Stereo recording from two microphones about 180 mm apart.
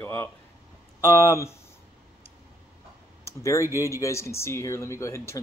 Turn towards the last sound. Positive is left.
turn(degrees=15)  # may be behind; listen again after turning